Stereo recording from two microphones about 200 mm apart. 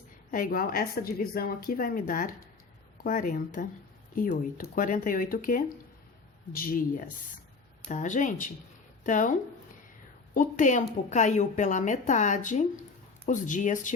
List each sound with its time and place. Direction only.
0.3 s a woman's voice: 45° left (ahead or behind)